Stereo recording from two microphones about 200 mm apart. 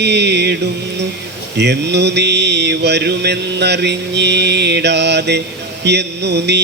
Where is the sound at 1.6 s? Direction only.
60° right (ahead or behind).